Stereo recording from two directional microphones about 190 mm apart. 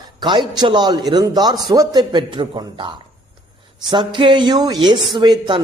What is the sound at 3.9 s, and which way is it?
A man's voice, 25° right (ahead or behind).